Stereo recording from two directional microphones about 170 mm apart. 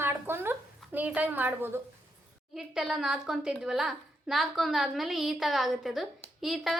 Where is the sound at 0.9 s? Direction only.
10° right (ahead or behind).